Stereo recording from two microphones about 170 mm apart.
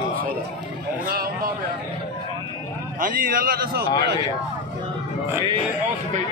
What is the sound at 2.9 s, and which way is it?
Speech, 55° right (ahead or behind).